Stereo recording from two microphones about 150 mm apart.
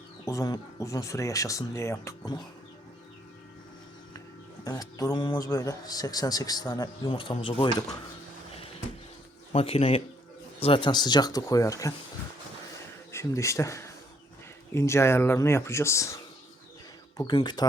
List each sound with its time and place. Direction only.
0.3 s speech: 25° left (ahead or behind)
4.6 s speech: 25° left (ahead or behind)
9.5 s speech: 40° left (ahead or behind); by 11.9 s 20° left (ahead or behind)
13.1 s speech: 20° left (ahead or behind)
17.3 s speech: 30° left (ahead or behind)